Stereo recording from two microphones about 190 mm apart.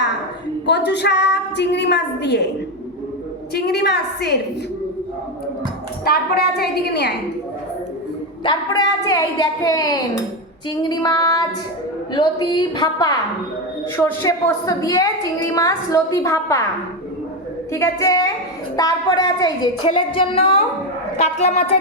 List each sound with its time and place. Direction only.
0.9 s a woman's voice: 65° left (ahead or behind)
3.5 s a woman's voice: 60° left (ahead or behind)
6.1 s a woman's voice: 55° left (ahead or behind)
8.4 s a woman's voice: 20° left (ahead or behind)
17.7 s a woman's voice: 15° left (ahead or behind); by 21.8 s 35° left (ahead or behind)